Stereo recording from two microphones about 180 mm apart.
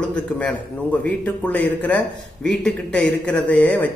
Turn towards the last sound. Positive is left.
turn(degrees=10)  # may be behind; listen again after turning